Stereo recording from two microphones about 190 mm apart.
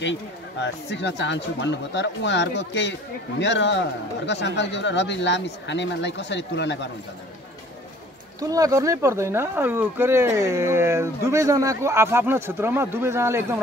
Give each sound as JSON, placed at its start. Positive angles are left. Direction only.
{"t": 0.0, "sound": "speech", "side_deg": 70}
{"t": 8.4, "sound": "speech", "side_deg": -20}